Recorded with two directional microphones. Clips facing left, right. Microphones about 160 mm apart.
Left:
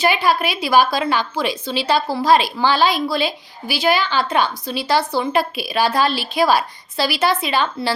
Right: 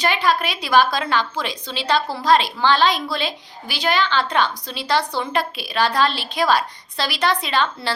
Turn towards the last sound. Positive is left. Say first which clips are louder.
# left 2 dB
turn(degrees=10)  # may be behind; listen again after turning